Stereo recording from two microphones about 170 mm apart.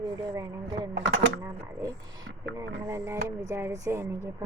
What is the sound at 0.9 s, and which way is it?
Speech, 90° right.